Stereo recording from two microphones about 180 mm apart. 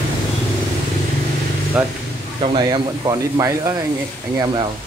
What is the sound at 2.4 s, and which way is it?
Speech, 30° right (ahead or behind).